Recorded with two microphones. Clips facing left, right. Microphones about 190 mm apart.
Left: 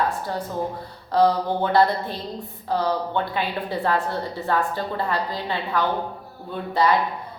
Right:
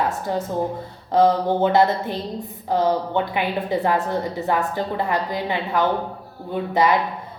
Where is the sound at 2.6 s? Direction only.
20° right (ahead or behind).